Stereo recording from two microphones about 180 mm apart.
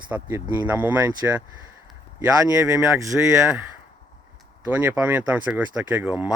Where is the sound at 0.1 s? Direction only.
15° right (ahead or behind).